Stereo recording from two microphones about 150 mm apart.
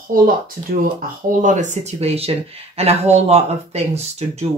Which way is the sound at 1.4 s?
55° right (ahead or behind).